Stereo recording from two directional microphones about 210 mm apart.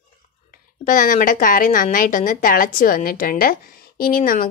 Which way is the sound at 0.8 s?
40° left (ahead or behind).